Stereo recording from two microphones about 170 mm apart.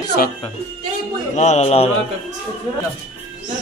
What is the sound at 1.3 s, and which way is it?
Speech, 40° left (ahead or behind).